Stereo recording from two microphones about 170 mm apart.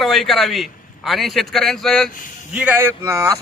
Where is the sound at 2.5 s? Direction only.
10° right (ahead or behind).